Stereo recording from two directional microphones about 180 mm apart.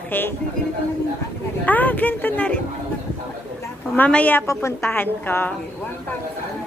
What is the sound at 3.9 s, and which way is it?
A woman's voice, 10° left (ahead or behind).